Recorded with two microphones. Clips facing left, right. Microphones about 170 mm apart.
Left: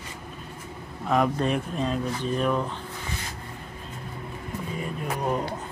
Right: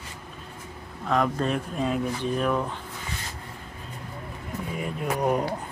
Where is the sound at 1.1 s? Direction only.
5° left (ahead or behind).